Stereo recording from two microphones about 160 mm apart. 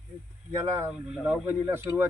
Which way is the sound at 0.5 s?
15° right (ahead or behind).